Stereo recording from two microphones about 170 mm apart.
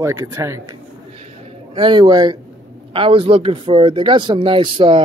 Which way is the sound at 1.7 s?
30° right (ahead or behind).